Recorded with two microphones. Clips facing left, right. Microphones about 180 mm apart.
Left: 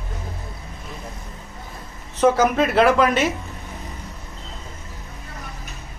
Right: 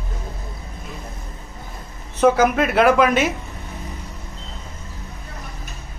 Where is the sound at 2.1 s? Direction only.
Centre (ahead or behind).